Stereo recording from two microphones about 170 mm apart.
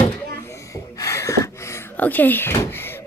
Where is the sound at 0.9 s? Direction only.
20° left (ahead or behind).